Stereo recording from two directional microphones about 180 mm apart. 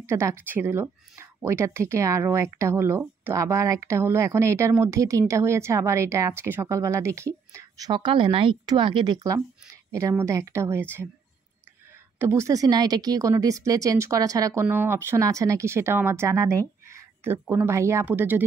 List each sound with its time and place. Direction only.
0.0 s speech: 15° right (ahead or behind)
12.2 s speech: 15° right (ahead or behind)